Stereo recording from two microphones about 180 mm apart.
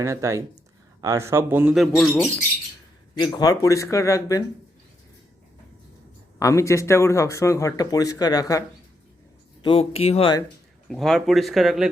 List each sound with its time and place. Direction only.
0.0 s speech: 15° right (ahead or behind)
1.7 s speech: centre (ahead or behind)
3.2 s speech: 25° left (ahead or behind)
6.4 s speech: 15° left (ahead or behind)
9.6 s speech: 30° left (ahead or behind)
10.8 s speech: centre (ahead or behind)